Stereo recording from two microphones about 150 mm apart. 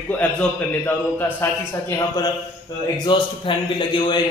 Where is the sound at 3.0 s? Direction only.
30° left (ahead or behind).